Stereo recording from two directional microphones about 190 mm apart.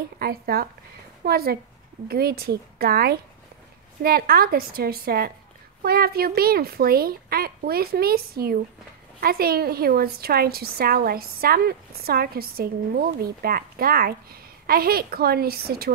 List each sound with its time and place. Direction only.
0.2 s a woman's voice: 55° right (ahead or behind)